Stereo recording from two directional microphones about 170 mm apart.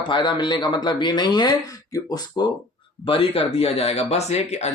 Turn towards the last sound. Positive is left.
turn(degrees=40)  # may be behind; listen again after turning